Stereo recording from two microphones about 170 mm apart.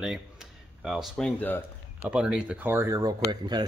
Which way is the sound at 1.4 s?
10° left (ahead or behind).